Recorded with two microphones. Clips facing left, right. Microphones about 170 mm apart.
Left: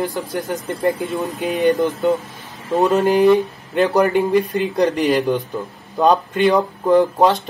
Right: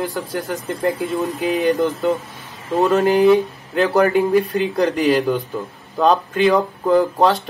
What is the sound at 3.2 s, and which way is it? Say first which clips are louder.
Speech: even; centre (ahead or behind).